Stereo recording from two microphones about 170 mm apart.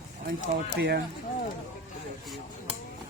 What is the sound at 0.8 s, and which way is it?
Speech, 75° right (ahead or behind).